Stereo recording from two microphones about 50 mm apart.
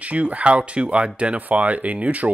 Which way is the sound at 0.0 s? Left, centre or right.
Right.